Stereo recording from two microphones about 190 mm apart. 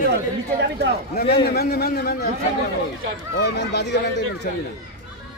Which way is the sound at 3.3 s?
65° left (ahead or behind).